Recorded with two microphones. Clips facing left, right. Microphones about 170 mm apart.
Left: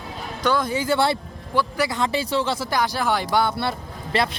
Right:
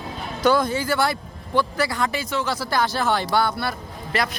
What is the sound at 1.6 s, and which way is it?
Speech, 15° left (ahead or behind).